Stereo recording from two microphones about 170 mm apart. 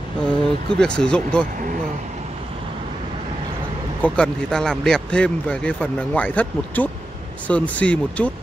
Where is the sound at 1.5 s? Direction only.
55° right (ahead or behind).